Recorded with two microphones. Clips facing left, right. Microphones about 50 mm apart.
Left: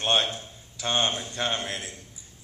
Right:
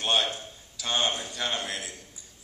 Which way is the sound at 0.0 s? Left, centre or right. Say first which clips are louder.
Left 2 dB; left.